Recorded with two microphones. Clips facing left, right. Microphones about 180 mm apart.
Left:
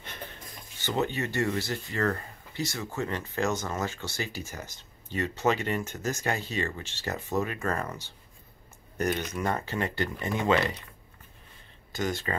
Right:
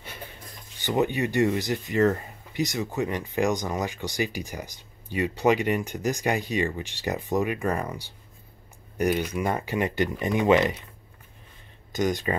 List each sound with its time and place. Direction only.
0.7 s speech: 15° right (ahead or behind)
11.9 s speech: 15° right (ahead or behind)